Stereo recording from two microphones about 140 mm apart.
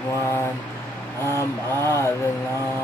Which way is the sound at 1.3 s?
20° left (ahead or behind).